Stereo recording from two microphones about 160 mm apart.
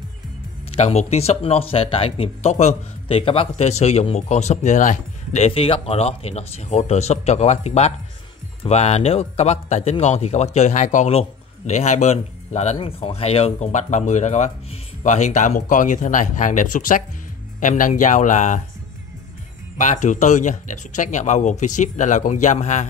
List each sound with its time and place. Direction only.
0.7 s speech: 40° left (ahead or behind)
19.8 s speech: 50° left (ahead or behind)